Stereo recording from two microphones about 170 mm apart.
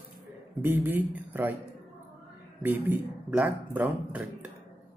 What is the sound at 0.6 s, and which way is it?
Speech, 10° right (ahead or behind).